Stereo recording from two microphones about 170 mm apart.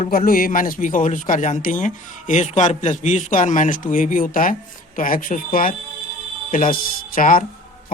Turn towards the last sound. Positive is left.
turn(degrees=55)  # may be behind; listen again after turning